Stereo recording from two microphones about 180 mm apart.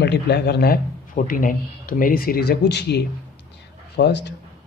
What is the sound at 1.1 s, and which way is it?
Speech, 50° left (ahead or behind).